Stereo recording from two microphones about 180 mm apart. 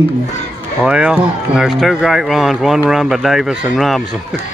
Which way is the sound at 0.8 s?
5° right (ahead or behind).